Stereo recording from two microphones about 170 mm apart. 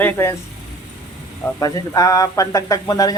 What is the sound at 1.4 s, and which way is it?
Speech, 20° left (ahead or behind).